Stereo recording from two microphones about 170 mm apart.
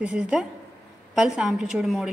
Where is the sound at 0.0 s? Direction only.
5° right (ahead or behind).